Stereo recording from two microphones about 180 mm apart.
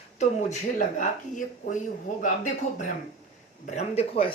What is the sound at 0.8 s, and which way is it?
Speech, 45° left (ahead or behind).